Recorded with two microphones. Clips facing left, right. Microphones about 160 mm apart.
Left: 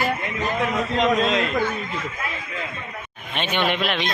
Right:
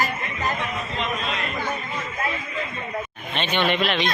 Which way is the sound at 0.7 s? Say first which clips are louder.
Left 8 dB; 90° left.